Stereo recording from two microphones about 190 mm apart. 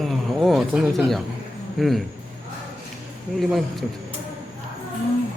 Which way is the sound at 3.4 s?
Centre (ahead or behind).